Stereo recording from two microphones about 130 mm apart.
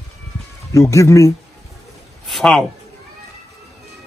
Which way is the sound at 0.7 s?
20° left (ahead or behind).